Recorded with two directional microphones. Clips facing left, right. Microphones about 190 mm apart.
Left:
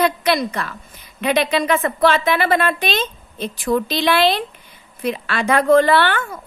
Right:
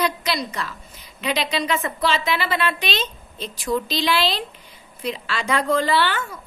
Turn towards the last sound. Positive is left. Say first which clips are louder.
# left 7 dB
turn(degrees=55)  # may be behind; listen again after turning